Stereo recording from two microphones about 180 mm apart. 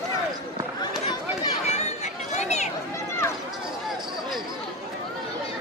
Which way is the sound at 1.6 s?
40° left (ahead or behind).